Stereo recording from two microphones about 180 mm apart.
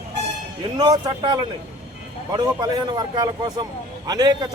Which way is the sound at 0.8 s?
20° right (ahead or behind).